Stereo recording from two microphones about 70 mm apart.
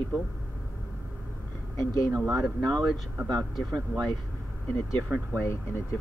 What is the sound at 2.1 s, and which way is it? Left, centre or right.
Speech, right.